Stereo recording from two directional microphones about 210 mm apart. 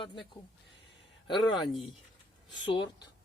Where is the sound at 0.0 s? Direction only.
25° left (ahead or behind).